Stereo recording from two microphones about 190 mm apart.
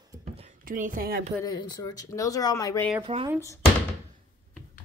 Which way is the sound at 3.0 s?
30° right (ahead or behind).